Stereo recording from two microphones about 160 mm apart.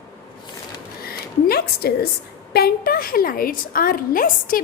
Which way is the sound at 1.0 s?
75° left (ahead or behind).